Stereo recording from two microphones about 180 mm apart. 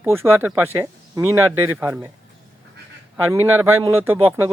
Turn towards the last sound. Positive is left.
turn(degrees=-15)  # may be behind; listen again after turning